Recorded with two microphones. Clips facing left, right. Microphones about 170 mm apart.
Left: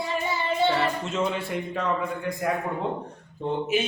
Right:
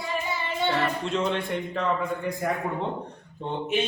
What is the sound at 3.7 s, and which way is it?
Speech, 5° left (ahead or behind).